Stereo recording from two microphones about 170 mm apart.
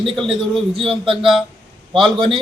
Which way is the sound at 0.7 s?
30° right (ahead or behind).